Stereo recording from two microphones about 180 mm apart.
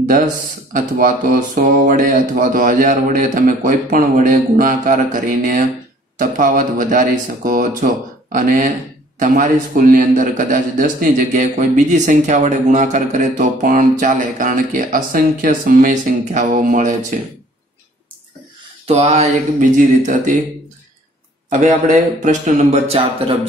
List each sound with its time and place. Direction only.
0.7 s a man's voice: 50° right (ahead or behind)
18.9 s a man's voice: 35° right (ahead or behind)
21.5 s a man's voice: 45° right (ahead or behind)